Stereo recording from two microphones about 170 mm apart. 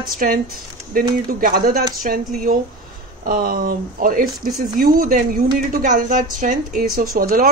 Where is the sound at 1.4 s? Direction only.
60° right (ahead or behind).